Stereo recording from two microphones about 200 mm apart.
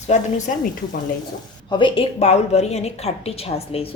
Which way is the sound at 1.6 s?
25° left (ahead or behind).